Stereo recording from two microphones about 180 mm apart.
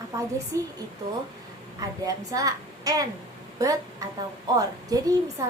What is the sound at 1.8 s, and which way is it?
A child's voice, 20° right (ahead or behind).